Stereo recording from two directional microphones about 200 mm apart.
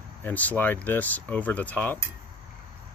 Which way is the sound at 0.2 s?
10° left (ahead or behind).